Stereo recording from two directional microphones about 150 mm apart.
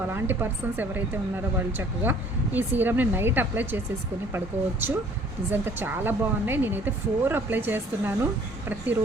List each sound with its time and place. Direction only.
0.1 s speech: 15° right (ahead or behind)